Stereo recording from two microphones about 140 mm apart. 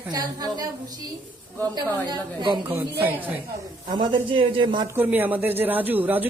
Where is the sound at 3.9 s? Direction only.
35° right (ahead or behind).